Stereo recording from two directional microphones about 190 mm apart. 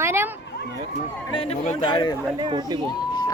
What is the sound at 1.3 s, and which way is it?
Speech, 30° left (ahead or behind).